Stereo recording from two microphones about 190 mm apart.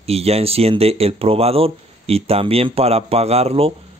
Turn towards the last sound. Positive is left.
turn(degrees=-30)  # may be behind; listen again after turning